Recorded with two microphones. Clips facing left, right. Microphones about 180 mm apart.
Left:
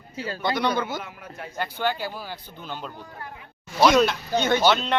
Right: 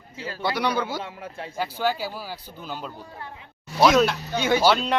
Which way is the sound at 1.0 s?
30° right (ahead or behind).